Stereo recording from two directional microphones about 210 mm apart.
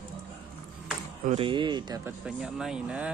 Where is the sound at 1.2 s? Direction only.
25° right (ahead or behind).